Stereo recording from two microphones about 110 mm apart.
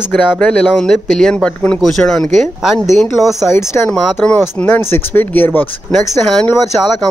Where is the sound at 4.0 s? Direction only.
5° left (ahead or behind).